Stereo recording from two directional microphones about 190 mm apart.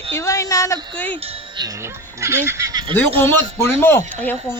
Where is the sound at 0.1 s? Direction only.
15° left (ahead or behind).